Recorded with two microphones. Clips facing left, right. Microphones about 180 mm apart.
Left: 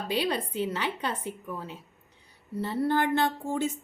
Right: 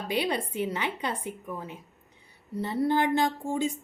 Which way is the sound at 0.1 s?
15° right (ahead or behind).